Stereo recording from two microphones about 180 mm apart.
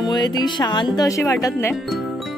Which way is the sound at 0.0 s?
25° left (ahead or behind).